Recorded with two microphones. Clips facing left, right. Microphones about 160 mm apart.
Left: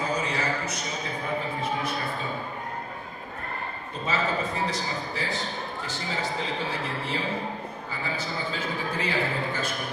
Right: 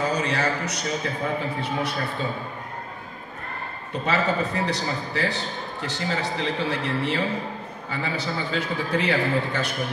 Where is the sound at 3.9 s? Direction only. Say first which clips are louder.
Right 4 dB; 70° right (ahead or behind).